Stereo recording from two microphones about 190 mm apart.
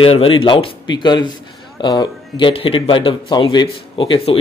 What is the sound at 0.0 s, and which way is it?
A man's voice, 30° left (ahead or behind).